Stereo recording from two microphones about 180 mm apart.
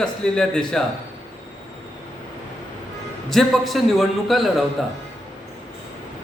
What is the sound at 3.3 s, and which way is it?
A man's voice, centre (ahead or behind).